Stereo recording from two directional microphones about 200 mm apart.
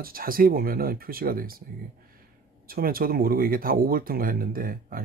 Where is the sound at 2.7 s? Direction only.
45° right (ahead or behind).